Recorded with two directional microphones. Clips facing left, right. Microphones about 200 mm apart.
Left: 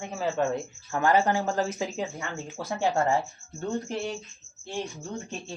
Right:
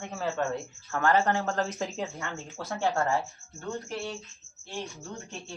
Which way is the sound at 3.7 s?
25° left (ahead or behind).